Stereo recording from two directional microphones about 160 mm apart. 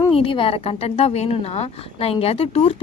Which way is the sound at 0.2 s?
35° left (ahead or behind).